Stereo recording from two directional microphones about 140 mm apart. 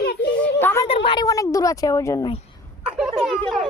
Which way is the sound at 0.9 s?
40° left (ahead or behind).